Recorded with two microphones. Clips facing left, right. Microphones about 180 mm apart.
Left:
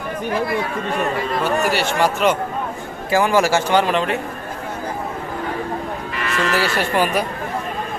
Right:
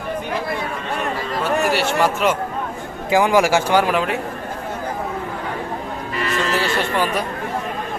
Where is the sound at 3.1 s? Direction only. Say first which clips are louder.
Right 1 dB; 15° right (ahead or behind).